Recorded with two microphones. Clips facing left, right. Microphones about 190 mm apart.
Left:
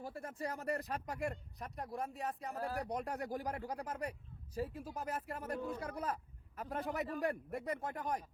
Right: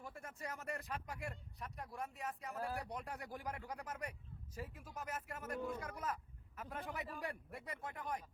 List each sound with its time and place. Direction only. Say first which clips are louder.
0.0 s speech: left 7 dB; 35° left (ahead or behind)